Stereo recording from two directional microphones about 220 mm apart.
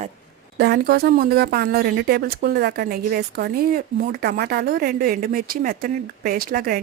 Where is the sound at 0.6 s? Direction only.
45° right (ahead or behind).